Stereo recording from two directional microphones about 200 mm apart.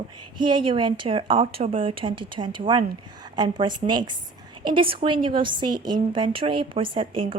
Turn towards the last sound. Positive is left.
turn(degrees=-25)  # may be behind; listen again after turning